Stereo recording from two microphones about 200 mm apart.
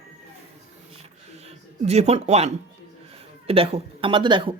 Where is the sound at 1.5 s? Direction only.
30° right (ahead or behind).